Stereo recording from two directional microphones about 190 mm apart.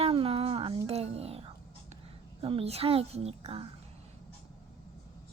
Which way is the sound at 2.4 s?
30° right (ahead or behind).